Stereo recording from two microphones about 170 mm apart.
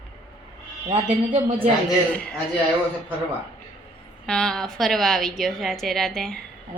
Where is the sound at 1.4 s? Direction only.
30° right (ahead or behind).